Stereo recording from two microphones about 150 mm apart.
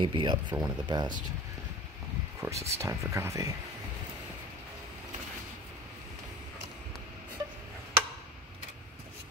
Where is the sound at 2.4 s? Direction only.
15° right (ahead or behind).